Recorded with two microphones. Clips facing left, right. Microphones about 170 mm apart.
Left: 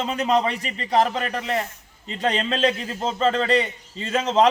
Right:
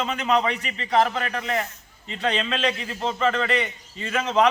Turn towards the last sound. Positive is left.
turn(degrees=30)  # may be behind; listen again after turning